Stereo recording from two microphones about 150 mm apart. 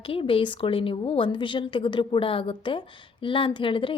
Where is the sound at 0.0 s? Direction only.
35° left (ahead or behind).